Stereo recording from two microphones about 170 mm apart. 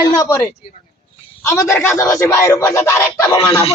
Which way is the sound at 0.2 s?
20° left (ahead or behind).